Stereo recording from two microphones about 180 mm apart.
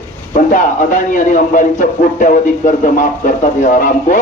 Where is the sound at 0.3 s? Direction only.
45° left (ahead or behind).